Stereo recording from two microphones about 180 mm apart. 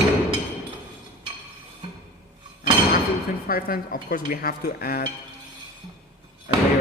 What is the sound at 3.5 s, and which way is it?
Speech, 55° left (ahead or behind).